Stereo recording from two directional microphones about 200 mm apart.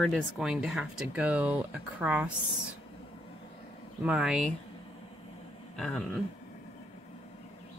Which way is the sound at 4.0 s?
5° right (ahead or behind).